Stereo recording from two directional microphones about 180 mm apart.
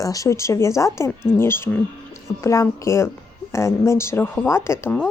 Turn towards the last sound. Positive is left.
turn(degrees=15)  # may be behind; listen again after turning